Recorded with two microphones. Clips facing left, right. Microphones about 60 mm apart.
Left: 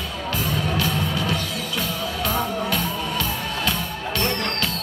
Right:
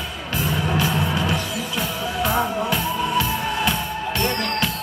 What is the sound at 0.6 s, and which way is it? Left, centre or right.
Music, centre.